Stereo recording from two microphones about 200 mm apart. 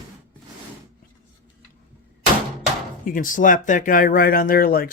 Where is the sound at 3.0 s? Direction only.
40° left (ahead or behind).